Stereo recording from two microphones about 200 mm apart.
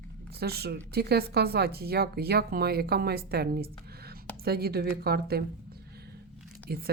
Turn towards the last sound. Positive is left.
turn(degrees=-50)  # may be behind; listen again after turning